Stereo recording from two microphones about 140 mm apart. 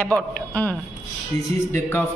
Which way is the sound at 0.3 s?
10° left (ahead or behind).